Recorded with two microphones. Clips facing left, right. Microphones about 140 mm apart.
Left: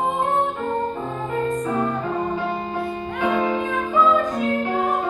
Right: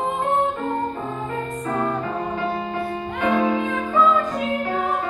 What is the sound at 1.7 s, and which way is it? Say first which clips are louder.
Music: left 1 dB; 20° left (ahead or behind).